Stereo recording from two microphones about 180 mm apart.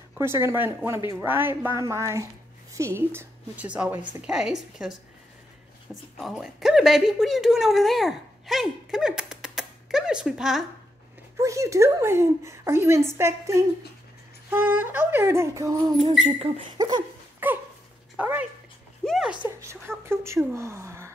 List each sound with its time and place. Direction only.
0.1 s a woman's voice: 15° right (ahead or behind)
6.1 s speech: centre (ahead or behind)
11.3 s a woman's voice: 15° right (ahead or behind)
16.3 s a sound: 25° right (ahead or behind)
17.4 s dog: 10° right (ahead or behind)
19.0 s a sound: centre (ahead or behind)
19.4 s a woman's voice: 15° right (ahead or behind)